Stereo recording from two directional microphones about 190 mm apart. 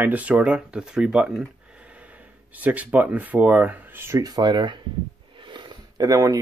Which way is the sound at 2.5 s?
10° right (ahead or behind).